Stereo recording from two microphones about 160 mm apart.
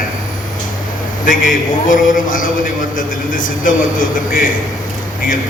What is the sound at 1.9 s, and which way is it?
A man's voice, 55° left (ahead or behind).